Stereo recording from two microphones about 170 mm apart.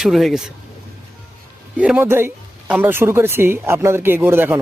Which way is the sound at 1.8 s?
10° right (ahead or behind).